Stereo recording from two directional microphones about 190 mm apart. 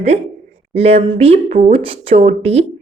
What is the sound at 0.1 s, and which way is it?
A woman's voice, 35° right (ahead or behind).